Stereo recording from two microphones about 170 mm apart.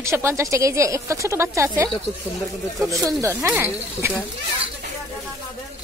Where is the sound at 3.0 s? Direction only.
15° right (ahead or behind).